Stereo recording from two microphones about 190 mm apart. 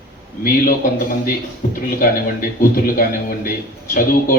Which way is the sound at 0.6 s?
50° left (ahead or behind).